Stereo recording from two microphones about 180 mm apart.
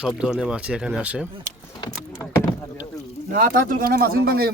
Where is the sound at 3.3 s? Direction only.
50° right (ahead or behind).